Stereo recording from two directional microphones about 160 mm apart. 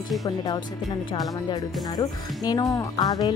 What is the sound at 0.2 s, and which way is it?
Speech, 20° left (ahead or behind).